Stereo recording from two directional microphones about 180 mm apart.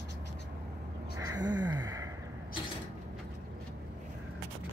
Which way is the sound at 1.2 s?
20° right (ahead or behind).